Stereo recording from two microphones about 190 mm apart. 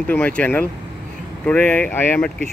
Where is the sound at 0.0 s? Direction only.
5° left (ahead or behind).